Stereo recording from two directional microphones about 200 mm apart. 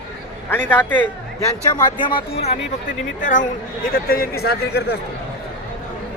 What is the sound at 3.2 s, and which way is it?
Speech, 40° left (ahead or behind).